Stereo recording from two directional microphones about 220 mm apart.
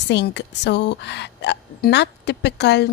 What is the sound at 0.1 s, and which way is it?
A woman's voice, 50° left (ahead or behind).